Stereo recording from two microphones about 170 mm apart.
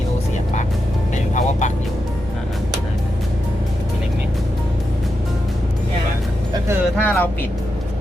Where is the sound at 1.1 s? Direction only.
45° left (ahead or behind).